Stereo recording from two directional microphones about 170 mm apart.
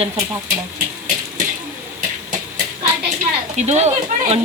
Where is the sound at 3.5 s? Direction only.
40° right (ahead or behind).